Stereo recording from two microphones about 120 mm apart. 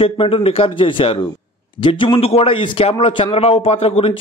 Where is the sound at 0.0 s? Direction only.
50° left (ahead or behind).